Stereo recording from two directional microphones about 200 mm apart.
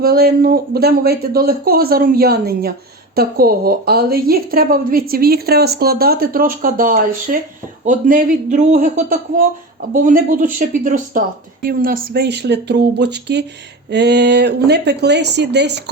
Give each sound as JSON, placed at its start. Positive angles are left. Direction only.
{"t": 0.0, "sound": "a woman's voice", "side_deg": -50}
{"t": 9.9, "sound": "a woman's voice", "side_deg": -40}